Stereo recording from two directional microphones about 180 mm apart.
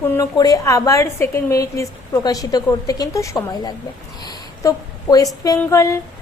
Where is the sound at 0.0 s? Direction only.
15° left (ahead or behind).